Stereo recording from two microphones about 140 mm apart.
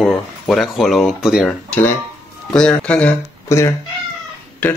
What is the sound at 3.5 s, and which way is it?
Speech, 20° left (ahead or behind).